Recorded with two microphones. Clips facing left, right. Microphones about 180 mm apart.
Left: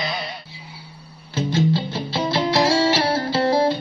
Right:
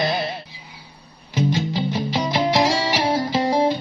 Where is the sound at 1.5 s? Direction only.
15° right (ahead or behind).